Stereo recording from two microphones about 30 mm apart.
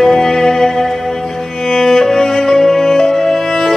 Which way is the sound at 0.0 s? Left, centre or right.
Centre.